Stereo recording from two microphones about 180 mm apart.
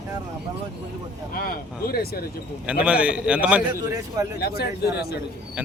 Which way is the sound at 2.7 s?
5° right (ahead or behind).